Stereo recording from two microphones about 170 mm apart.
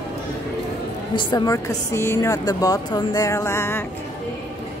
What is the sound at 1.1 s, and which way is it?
Speech, 25° left (ahead or behind).